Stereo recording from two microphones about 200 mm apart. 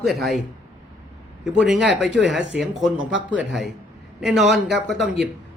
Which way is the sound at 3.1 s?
70° right (ahead or behind).